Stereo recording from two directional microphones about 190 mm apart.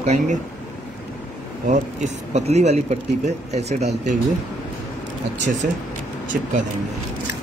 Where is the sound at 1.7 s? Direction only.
35° right (ahead or behind).